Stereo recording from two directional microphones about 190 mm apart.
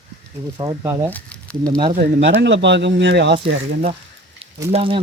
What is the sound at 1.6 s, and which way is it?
Speech, 20° right (ahead or behind).